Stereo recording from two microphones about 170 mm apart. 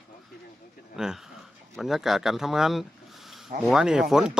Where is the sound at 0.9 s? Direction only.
5° right (ahead or behind).